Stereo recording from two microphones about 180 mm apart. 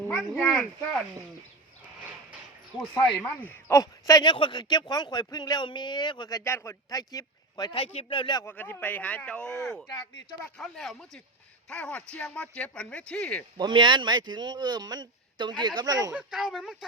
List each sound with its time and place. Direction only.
0.0 s speech: 5° left (ahead or behind)
2.7 s speech: 15° left (ahead or behind)
8.4 s speech: 10° left (ahead or behind)
10.6 s speech: centre (ahead or behind)
13.6 s a man's voice: 25° right (ahead or behind)
16.1 s speech: 5° right (ahead or behind)